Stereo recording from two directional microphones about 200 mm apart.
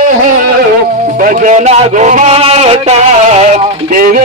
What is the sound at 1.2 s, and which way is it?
A man's voice, 40° right (ahead or behind).